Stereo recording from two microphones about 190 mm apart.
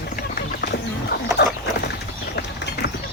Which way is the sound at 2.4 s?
60° left (ahead or behind).